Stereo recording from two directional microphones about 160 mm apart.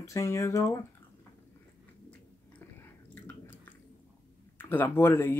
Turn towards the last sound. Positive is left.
turn(degrees=15)  # may be behind; listen again after turning